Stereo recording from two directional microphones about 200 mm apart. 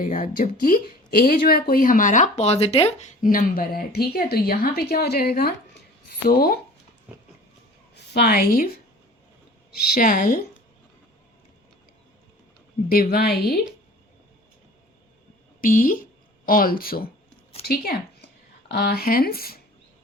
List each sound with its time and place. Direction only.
0.0 s a woman's voice: 40° left (ahead or behind)
7.1 s a sound: 5° right (ahead or behind)
7.9 s a woman's voice: 55° left (ahead or behind)
9.9 s a woman's voice: 45° left (ahead or behind)
12.9 s a woman's voice: 50° left (ahead or behind)
15.6 s a woman's voice: 45° left (ahead or behind)